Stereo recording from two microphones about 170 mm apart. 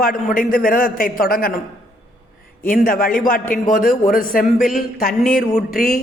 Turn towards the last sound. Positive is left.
turn(degrees=60)  # may be behind; listen again after turning